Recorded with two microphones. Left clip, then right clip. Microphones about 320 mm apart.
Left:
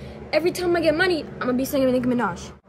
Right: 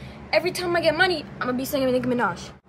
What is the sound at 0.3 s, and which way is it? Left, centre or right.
Female singing, centre.